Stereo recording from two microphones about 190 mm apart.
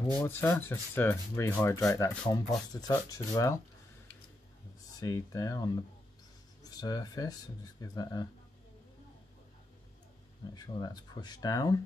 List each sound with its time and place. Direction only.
0.2 s sanding: 10° left (ahead or behind)
2.0 s speech: 20° left (ahead or behind)
5.0 s sanding: 15° left (ahead or behind)
6.6 s speech: 20° left (ahead or behind)
10.5 s speech: 20° left (ahead or behind)